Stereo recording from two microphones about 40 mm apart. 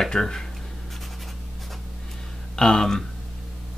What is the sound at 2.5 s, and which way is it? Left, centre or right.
Speech, centre.